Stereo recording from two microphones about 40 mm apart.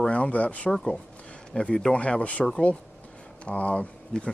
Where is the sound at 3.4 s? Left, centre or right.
Left.